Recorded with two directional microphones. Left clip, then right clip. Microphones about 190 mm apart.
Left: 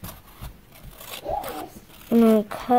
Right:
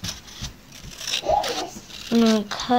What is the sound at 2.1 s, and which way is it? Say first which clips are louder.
Speech: left 2 dB; 55° left (ahead or behind).